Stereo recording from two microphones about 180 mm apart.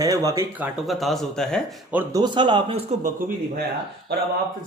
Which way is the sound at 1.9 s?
10° right (ahead or behind).